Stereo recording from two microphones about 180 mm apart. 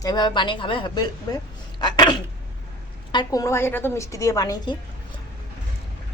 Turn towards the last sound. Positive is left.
turn(degrees=20)  # may be behind; listen again after turning